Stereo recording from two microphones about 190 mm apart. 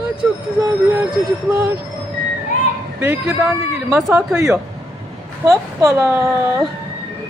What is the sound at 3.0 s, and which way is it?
Speech, 10° right (ahead or behind).